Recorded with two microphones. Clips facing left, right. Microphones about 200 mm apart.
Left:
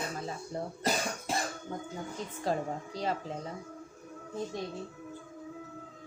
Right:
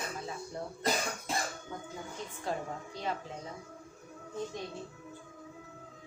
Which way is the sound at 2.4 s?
35° left (ahead or behind).